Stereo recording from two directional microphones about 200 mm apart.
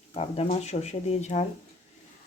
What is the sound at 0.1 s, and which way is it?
Speech, 30° left (ahead or behind).